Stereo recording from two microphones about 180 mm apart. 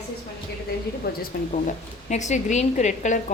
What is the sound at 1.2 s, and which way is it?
A woman's voice, 45° left (ahead or behind).